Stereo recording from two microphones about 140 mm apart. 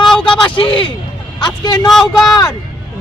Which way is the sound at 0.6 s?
35° left (ahead or behind).